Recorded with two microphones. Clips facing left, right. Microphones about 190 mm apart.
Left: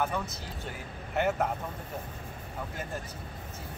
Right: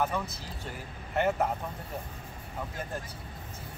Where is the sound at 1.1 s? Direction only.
Centre (ahead or behind).